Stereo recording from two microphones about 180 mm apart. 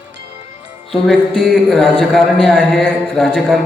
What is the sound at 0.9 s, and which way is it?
A man's voice, centre (ahead or behind).